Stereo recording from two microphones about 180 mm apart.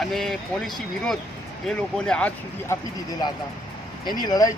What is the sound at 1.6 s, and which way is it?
Speech, 5° left (ahead or behind).